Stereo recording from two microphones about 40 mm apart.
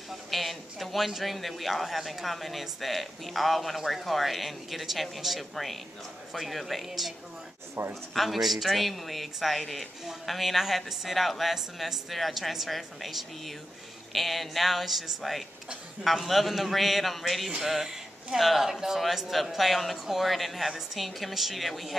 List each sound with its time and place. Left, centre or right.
0.3 s a man's voice: centre
7.8 s a man's voice: right
8.1 s a man's voice: centre